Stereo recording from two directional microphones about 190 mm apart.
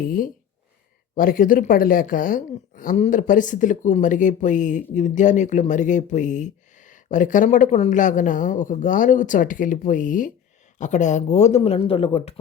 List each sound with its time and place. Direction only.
0.0 s a woman's voice: 45° left (ahead or behind); by 12.3 s 30° left (ahead or behind)